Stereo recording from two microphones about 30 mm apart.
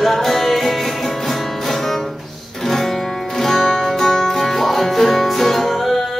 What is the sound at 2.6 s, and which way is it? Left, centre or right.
Music, centre.